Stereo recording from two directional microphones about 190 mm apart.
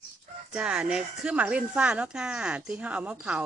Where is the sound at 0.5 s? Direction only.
5° right (ahead or behind).